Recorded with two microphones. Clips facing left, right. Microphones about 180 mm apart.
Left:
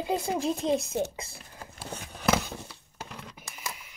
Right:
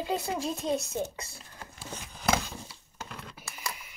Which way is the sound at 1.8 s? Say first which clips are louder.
Left 3 dB; 60° left (ahead or behind).